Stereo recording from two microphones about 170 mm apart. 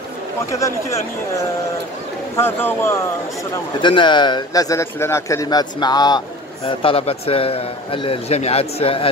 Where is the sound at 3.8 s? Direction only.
30° left (ahead or behind).